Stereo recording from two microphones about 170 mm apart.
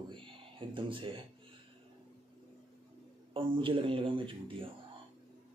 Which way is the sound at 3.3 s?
30° right (ahead or behind).